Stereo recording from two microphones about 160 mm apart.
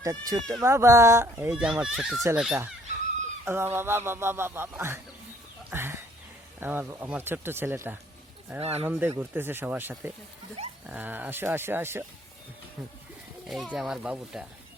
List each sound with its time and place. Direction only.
0.0 s speech: 20° right (ahead or behind)
1.5 s a child's voice: 5° right (ahead or behind)
5.7 s a sound: 15° right (ahead or behind)
6.6 s speech: 10° right (ahead or behind)
8.5 s speech: 40° right (ahead or behind)
8.9 s speech: 15° right (ahead or behind)
13.7 s a child's voice: 5° right (ahead or behind)